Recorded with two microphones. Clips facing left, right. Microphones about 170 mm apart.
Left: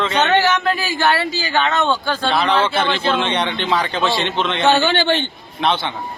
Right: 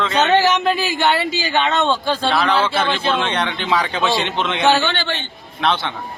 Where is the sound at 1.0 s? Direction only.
20° right (ahead or behind).